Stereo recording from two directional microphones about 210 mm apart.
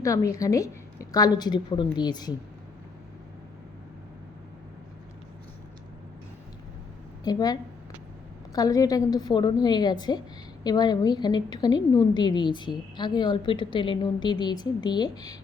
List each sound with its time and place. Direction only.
0.0 s a woman's voice: 15° left (ahead or behind)
7.3 s a woman's voice: 20° left (ahead or behind)